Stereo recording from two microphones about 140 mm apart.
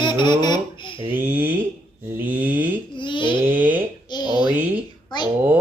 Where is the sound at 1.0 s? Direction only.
15° right (ahead or behind).